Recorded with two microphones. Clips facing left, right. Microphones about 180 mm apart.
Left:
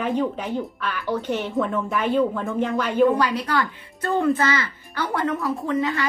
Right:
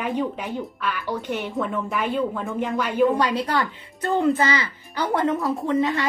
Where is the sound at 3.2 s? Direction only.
25° right (ahead or behind).